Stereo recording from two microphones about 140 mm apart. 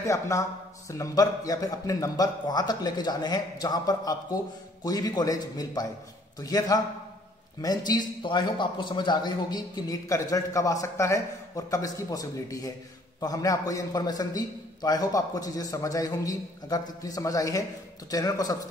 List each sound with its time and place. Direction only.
0.0 s a man's voice: 20° left (ahead or behind)